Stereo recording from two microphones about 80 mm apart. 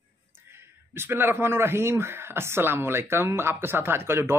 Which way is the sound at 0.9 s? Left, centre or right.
Right.